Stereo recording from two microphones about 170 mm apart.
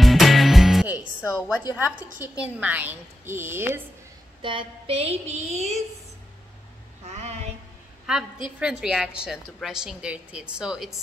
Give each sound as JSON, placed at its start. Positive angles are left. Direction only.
{"t": 0.0, "sound": "music", "side_deg": 0}
{"t": 0.9, "sound": "speech", "side_deg": 15}
{"t": 2.4, "sound": "a woman's voice", "side_deg": -10}
{"t": 4.4, "sound": "a sound", "side_deg": -30}
{"t": 7.1, "sound": "a sound", "side_deg": -40}
{"t": 8.1, "sound": "a woman's voice", "side_deg": -5}